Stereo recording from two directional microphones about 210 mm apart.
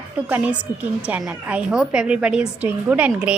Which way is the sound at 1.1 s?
5° right (ahead or behind).